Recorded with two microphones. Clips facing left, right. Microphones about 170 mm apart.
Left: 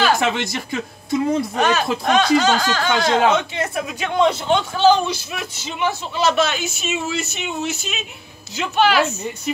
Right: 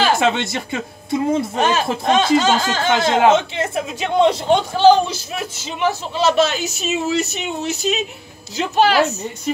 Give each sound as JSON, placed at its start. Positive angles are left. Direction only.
{"t": 0.0, "sound": "speech", "side_deg": -25}
{"t": 4.5, "sound": "a man's voice", "side_deg": -40}